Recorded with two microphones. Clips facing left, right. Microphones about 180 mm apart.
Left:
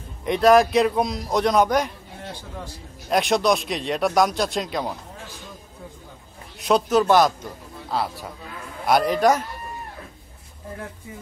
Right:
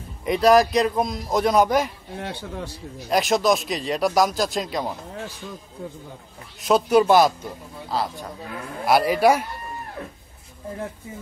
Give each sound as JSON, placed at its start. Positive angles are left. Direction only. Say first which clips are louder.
{"t": 0.2, "sound": "speech", "louder": "left 1 dB", "side_deg": 0}
{"t": 2.1, "sound": "a man's voice", "louder": "right 6 dB", "side_deg": -65}
{"t": 3.1, "sound": "speech", "louder": "even", "side_deg": 0}
{"t": 6.9, "sound": "a man's voice", "louder": "right 2 dB", "side_deg": -10}